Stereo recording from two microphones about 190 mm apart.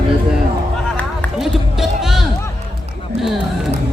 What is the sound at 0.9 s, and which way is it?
Run, 5° left (ahead or behind).